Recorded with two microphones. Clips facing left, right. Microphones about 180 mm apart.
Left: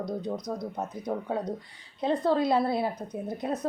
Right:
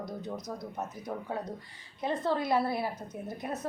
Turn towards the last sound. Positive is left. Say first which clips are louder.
# left 6 dB
turn(degrees=20)  # may be behind; listen again after turning